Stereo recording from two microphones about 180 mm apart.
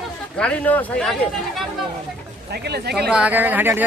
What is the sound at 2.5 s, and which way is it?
Speech, 65° right (ahead or behind).